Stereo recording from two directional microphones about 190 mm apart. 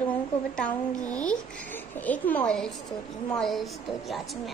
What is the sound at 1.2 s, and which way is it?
A woman's voice, 5° left (ahead or behind).